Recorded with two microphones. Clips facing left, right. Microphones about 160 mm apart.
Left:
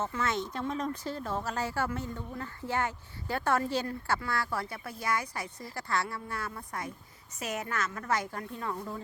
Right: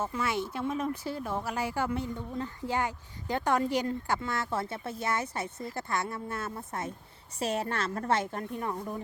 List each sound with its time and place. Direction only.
0.0 s a woman's voice: 10° right (ahead or behind)